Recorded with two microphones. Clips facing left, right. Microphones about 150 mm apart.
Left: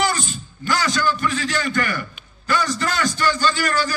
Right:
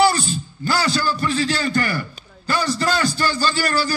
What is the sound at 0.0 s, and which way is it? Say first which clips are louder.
A man's voice: right 5 dB; 35° right (ahead or behind).